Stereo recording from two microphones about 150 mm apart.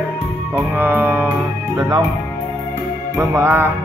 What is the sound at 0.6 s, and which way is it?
Music, 10° right (ahead or behind).